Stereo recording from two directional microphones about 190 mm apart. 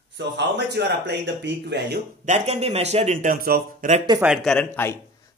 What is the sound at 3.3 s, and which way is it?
Speech, 50° right (ahead or behind).